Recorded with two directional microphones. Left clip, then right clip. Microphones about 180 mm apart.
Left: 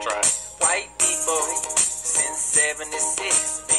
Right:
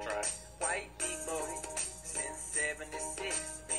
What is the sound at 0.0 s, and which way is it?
Music, 30° left (ahead or behind).